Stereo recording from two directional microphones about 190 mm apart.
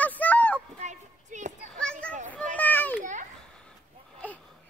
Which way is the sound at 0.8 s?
40° right (ahead or behind).